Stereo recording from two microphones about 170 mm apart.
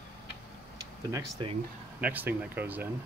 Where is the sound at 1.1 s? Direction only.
20° right (ahead or behind).